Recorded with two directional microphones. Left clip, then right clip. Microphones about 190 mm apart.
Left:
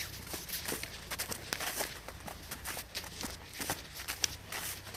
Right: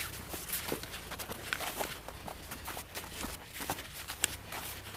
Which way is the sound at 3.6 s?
5° right (ahead or behind).